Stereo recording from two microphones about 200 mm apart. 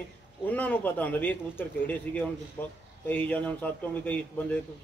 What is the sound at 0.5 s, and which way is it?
A man's voice, 10° left (ahead or behind).